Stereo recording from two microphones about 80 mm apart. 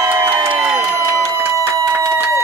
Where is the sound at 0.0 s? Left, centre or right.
Right.